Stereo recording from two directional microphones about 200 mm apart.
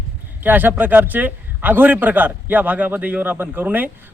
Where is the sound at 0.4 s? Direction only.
10° right (ahead or behind).